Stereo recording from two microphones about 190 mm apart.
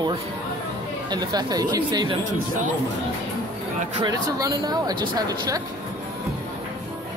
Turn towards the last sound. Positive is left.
turn(degrees=-20)  # may be behind; listen again after turning